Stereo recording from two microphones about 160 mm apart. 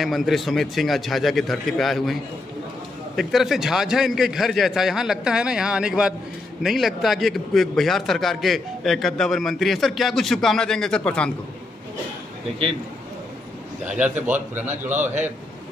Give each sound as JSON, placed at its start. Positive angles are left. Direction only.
{"t": 0.0, "sound": "a man's voice", "side_deg": 0}
{"t": 3.2, "sound": "a man's voice", "side_deg": 0}
{"t": 13.8, "sound": "a man's voice", "side_deg": -10}
{"t": 14.7, "sound": "a man's voice", "side_deg": -50}